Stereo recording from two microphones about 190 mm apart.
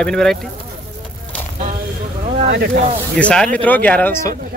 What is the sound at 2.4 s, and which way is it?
Speech, 60° right (ahead or behind).